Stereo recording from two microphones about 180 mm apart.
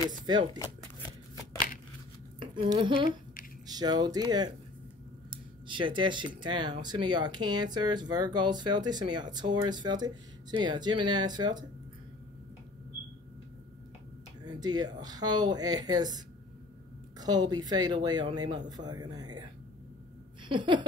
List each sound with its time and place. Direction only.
0.1 s speech: 25° right (ahead or behind)
2.4 s a woman's voice: 25° right (ahead or behind)
14.4 s speech: 20° right (ahead or behind)
17.2 s speech: 20° right (ahead or behind)
20.4 s laughter: 25° right (ahead or behind)